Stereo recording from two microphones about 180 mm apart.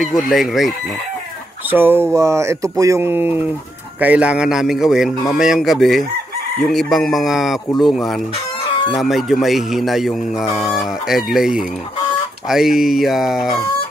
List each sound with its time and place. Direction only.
0.0 s a man's voice: centre (ahead or behind)
1.7 s a man's voice: 10° right (ahead or behind)